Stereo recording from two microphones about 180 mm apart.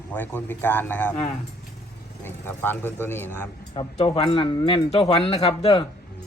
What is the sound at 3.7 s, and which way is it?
Speech, 30° left (ahead or behind).